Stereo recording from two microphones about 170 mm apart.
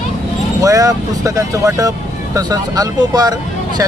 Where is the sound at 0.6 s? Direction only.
20° right (ahead or behind).